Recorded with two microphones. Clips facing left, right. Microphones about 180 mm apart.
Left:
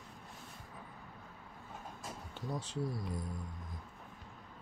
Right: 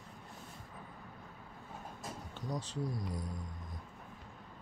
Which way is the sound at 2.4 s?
5° left (ahead or behind).